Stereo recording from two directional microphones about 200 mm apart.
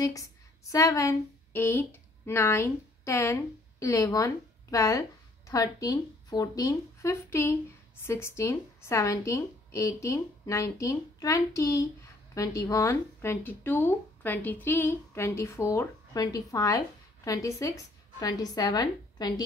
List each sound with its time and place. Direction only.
0.0 s a woman's voice: 15° left (ahead or behind)